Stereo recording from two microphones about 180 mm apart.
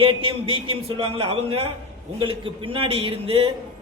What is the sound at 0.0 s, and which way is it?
A man's voice, 30° right (ahead or behind).